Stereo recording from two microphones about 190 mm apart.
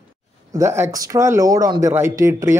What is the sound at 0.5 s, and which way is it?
Speech, 15° right (ahead or behind).